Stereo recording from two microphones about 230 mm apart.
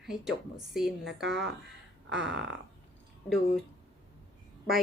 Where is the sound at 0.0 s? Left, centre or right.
Centre.